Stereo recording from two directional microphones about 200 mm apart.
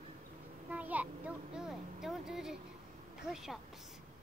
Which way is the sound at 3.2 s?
Centre (ahead or behind).